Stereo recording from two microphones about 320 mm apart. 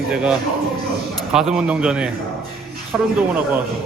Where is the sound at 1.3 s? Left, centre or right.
Centre.